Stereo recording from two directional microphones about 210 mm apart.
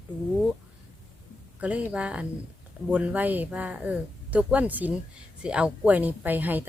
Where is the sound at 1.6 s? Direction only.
5° right (ahead or behind).